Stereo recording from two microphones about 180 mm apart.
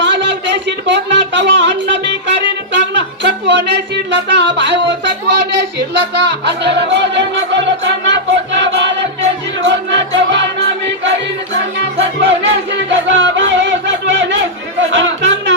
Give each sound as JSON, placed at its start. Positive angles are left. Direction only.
{"t": 0.0, "sound": "music", "side_deg": -80}
{"t": 6.1, "sound": "music", "side_deg": -70}